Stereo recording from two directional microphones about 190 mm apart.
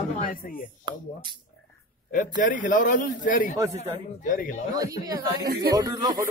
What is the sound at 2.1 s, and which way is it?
A man's voice, 45° left (ahead or behind).